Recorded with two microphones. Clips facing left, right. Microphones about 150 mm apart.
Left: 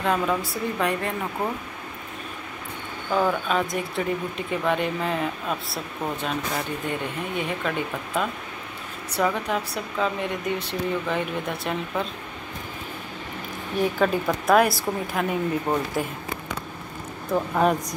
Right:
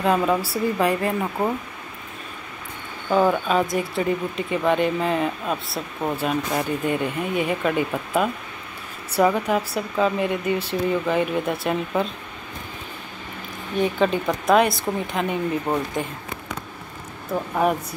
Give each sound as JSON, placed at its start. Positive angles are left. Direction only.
{"t": 0.0, "sound": "a woman's voice", "side_deg": -10}
{"t": 3.1, "sound": "speech", "side_deg": -15}
{"t": 3.4, "sound": "speech", "side_deg": 0}
{"t": 13.7, "sound": "speech", "side_deg": 5}
{"t": 17.3, "sound": "speech", "side_deg": -5}